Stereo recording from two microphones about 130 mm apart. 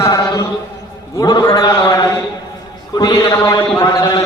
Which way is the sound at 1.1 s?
30° left (ahead or behind).